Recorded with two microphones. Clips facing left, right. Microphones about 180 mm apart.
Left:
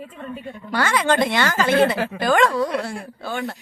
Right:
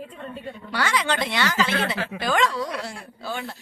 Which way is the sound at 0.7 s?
50° left (ahead or behind).